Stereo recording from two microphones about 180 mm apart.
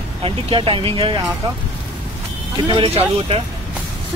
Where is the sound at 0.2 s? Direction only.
30° right (ahead or behind).